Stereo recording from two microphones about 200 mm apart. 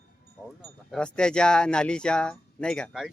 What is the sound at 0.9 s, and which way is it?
Speech, 5° left (ahead or behind).